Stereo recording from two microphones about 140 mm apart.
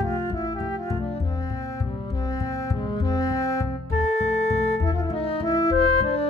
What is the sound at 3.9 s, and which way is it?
Music, 55° left (ahead or behind).